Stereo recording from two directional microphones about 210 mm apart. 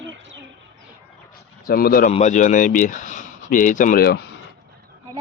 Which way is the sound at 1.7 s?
45° left (ahead or behind).